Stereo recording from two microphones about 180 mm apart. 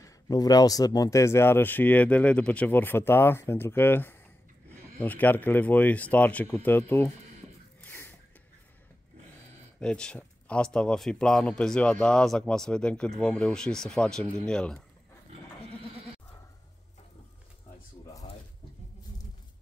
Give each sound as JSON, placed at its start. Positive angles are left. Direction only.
{"t": 0.0, "sound": "speech", "side_deg": 20}
{"t": 7.8, "sound": "a sound", "side_deg": 10}
{"t": 9.8, "sound": "a man's voice", "side_deg": 5}